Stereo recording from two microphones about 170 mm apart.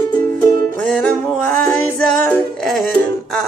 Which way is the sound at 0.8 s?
5° left (ahead or behind).